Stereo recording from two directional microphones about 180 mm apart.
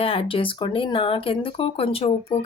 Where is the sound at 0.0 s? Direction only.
30° left (ahead or behind).